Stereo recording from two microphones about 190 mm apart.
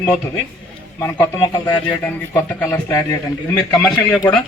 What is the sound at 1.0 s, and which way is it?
A man's voice, 15° left (ahead or behind).